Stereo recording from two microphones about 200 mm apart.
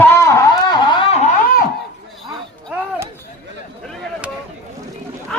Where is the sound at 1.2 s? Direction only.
35° left (ahead or behind).